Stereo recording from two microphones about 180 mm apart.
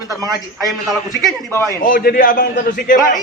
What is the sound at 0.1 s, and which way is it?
Speech, 20° right (ahead or behind).